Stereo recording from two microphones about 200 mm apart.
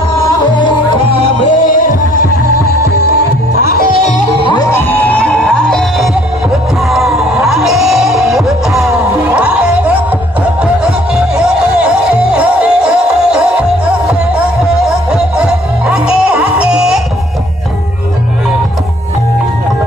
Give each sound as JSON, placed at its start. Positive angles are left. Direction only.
{"t": 1.4, "sound": "music", "side_deg": 40}
{"t": 3.1, "sound": "music", "side_deg": 50}
{"t": 4.5, "sound": "music", "side_deg": 15}
{"t": 15.0, "sound": "music", "side_deg": -5}